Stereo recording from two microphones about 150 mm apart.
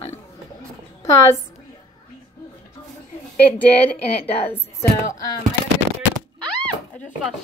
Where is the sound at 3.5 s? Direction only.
10° left (ahead or behind).